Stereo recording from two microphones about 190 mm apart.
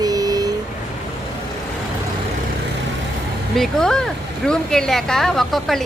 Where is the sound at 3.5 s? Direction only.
Centre (ahead or behind).